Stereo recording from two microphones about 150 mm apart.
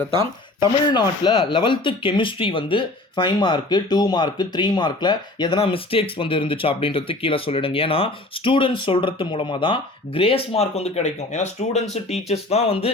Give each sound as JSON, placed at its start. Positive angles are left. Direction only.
{"t": 0.2, "sound": "speech", "side_deg": 30}